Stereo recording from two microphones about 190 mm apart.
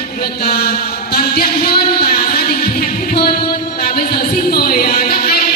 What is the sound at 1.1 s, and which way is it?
Music, 55° left (ahead or behind).